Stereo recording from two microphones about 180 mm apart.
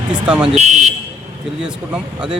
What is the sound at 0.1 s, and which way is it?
Speech, 5° right (ahead or behind).